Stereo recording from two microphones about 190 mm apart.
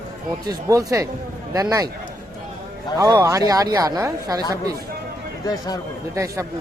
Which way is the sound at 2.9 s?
20° right (ahead or behind).